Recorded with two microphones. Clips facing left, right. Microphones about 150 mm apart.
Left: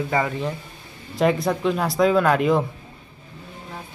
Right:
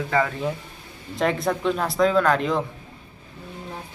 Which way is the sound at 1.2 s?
Centre (ahead or behind).